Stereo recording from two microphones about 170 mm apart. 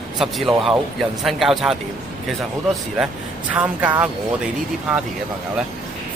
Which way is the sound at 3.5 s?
10° right (ahead or behind).